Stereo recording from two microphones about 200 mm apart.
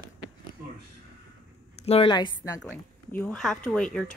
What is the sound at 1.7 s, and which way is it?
Speech, 30° left (ahead or behind).